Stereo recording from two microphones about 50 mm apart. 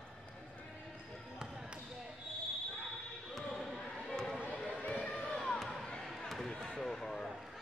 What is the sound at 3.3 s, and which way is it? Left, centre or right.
Basketball bounce, centre.